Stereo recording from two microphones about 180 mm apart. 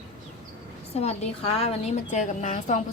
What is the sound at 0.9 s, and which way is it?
A woman's voice, 35° left (ahead or behind).